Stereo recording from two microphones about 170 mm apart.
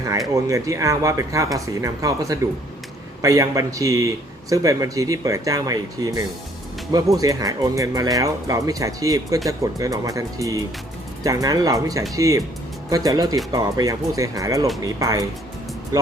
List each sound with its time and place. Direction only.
0.4 s speech: 20° right (ahead or behind)